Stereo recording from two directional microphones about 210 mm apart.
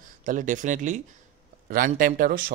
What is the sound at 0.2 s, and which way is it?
Speech, 40° right (ahead or behind).